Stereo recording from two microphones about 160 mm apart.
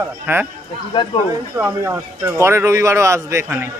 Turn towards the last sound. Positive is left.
turn(degrees=-15)  # may be behind; listen again after turning